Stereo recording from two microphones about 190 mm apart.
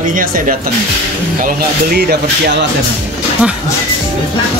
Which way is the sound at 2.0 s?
60° right (ahead or behind).